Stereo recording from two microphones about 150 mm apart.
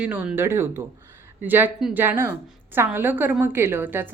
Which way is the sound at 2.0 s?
15° right (ahead or behind).